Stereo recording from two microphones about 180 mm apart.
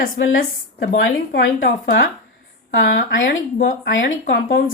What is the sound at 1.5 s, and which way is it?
Speech, 50° left (ahead or behind).